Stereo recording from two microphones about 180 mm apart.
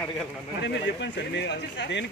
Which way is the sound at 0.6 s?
80° left.